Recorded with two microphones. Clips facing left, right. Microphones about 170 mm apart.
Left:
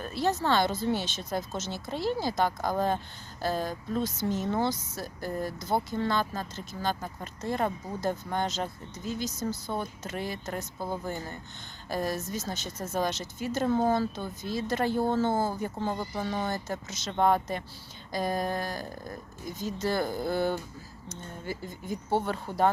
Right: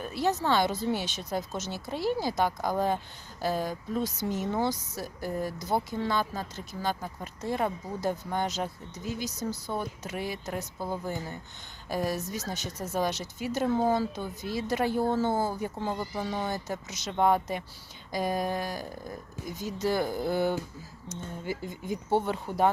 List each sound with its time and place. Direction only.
0.0 s speech: 15° right (ahead or behind)
16.5 s speech: 15° right (ahead or behind)